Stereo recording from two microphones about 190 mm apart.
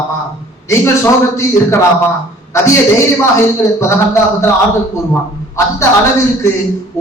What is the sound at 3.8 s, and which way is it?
Speech, 15° left (ahead or behind).